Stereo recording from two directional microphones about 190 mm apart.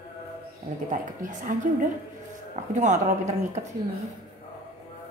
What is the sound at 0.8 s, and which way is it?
A woman's voice, 45° right (ahead or behind).